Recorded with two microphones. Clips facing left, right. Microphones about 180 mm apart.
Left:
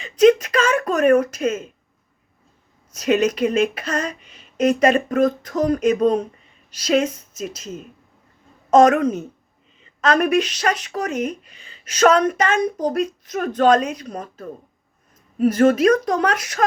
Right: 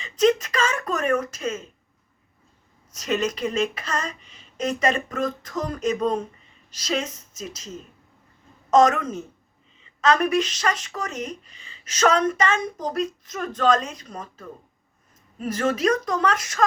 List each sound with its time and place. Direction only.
0.0 s speech: 55° left (ahead or behind)
2.9 s speech: 55° left (ahead or behind)
6.7 s speech: 55° left (ahead or behind)
8.7 s speech: 55° left (ahead or behind)